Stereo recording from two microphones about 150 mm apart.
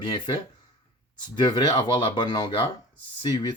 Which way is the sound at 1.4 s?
30° left (ahead or behind).